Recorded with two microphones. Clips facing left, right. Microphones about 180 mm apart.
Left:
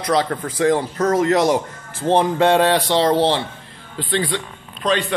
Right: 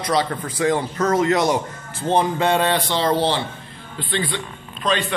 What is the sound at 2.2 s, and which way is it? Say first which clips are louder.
Speech: left 3 dB; 70° left (ahead or behind).